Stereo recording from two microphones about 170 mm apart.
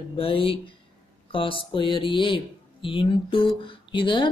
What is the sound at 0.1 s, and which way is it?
Speech, 30° left (ahead or behind).